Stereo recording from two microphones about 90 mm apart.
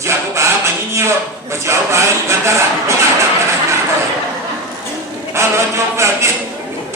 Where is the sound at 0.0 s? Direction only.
30° right (ahead or behind).